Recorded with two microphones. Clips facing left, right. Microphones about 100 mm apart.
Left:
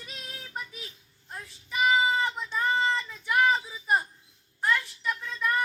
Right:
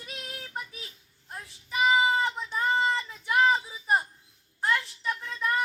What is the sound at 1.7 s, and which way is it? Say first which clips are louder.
Child singing: right 1 dB; 20° right (ahead or behind).